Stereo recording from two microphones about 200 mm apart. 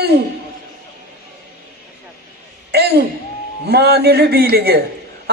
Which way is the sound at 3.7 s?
55° right (ahead or behind).